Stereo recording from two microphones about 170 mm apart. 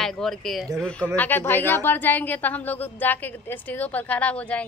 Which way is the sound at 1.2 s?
10° left (ahead or behind).